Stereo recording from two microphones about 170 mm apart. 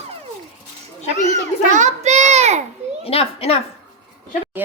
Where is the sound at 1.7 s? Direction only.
45° right (ahead or behind).